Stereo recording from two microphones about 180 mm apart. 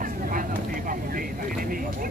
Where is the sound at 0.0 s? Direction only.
50° right (ahead or behind).